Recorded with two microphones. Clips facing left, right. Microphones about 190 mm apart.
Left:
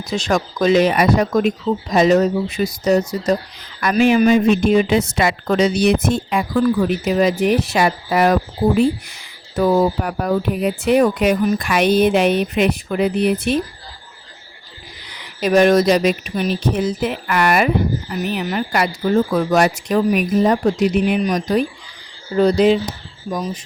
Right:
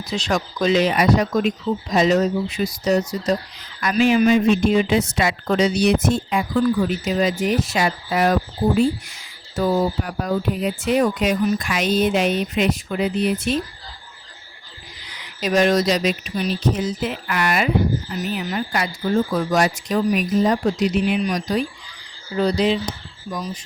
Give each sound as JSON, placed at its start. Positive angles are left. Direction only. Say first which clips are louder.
{"t": 0.0, "sound": "speech", "louder": "left 3 dB", "side_deg": 50}
{"t": 15.4, "sound": "speech", "louder": "left 5 dB", "side_deg": 55}